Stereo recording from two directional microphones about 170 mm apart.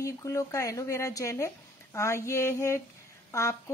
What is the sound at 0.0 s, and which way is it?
A woman's voice, 20° left (ahead or behind).